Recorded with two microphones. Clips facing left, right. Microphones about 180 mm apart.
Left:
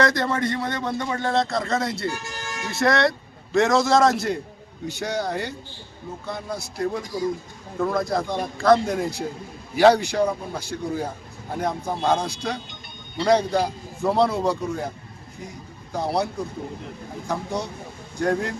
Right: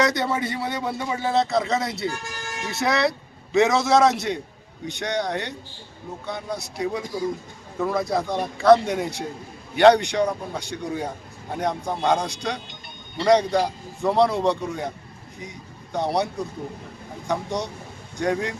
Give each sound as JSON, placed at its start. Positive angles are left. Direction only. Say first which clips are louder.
{"t": 0.0, "sound": "speech", "louder": "left 1 dB", "side_deg": 0}